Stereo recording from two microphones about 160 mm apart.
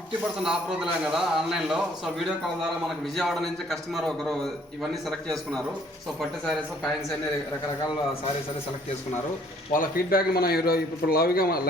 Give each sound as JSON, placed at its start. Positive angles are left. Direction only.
{"t": 0.4, "sound": "a man's voice", "side_deg": -5}
{"t": 9.7, "sound": "a man's voice", "side_deg": 60}